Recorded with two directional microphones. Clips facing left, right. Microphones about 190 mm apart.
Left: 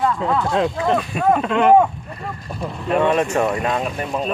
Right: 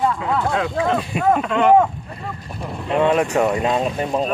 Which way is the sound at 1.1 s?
20° right (ahead or behind).